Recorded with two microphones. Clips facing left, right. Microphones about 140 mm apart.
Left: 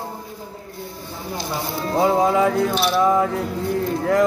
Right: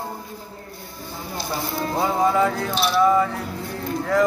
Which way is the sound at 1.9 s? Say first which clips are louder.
Left 3 dB; 15° left (ahead or behind).